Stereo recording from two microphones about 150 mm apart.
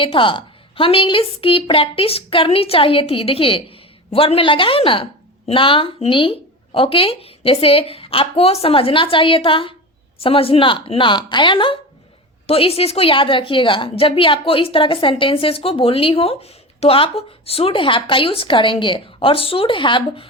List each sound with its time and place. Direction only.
0.0 s a woman's voice: 35° left (ahead or behind)